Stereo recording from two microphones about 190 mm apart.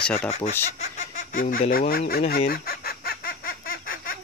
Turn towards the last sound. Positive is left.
turn(degrees=50)  # may be behind; listen again after turning